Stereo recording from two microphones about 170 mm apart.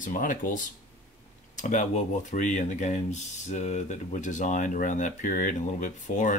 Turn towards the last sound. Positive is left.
turn(degrees=45)  # may be behind; listen again after turning